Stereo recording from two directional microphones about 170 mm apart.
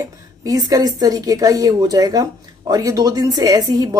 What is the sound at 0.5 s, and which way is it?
Speech, 20° right (ahead or behind).